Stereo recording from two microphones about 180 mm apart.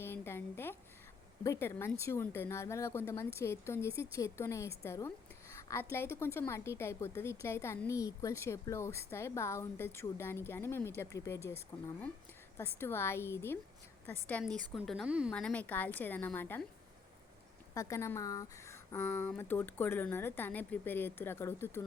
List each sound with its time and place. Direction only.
0.0 s a sound: 15° left (ahead or behind)
1.5 s a woman's voice: 15° left (ahead or behind)
12.5 s a woman's voice: 15° left (ahead or behind); by 15.3 s 5° right (ahead or behind)
15.3 s a woman's voice: 5° left (ahead or behind)
17.7 s a woman's voice: 15° left (ahead or behind)